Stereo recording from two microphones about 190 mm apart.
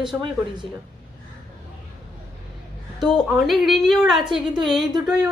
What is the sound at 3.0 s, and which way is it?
A woman's voice, centre (ahead or behind).